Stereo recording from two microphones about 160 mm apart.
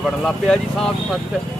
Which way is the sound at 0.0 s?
5° left (ahead or behind).